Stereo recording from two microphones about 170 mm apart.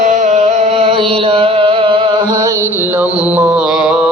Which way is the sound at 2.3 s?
20° right (ahead or behind).